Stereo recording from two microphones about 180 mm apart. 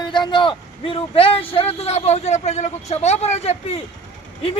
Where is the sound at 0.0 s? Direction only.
25° left (ahead or behind).